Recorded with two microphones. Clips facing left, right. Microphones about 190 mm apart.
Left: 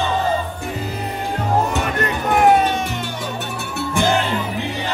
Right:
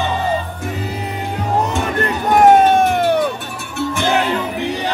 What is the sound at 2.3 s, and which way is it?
Music, 40° right (ahead or behind).